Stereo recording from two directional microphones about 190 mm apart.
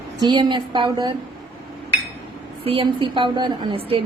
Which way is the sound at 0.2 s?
25° right (ahead or behind).